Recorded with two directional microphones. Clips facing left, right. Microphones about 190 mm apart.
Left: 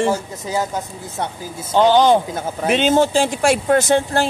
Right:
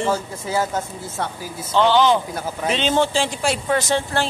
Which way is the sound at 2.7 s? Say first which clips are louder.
Left 5 dB; 45° left (ahead or behind).